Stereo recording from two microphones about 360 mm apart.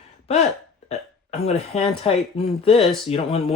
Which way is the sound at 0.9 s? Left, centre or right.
Centre.